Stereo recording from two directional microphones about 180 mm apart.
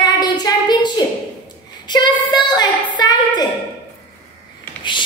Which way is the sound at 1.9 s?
25° left (ahead or behind).